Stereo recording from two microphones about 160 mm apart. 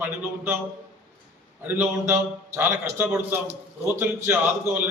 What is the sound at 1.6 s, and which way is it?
A man's voice, 10° right (ahead or behind).